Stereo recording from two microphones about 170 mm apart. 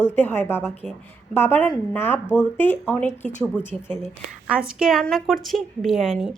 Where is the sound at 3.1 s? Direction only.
45° left (ahead or behind).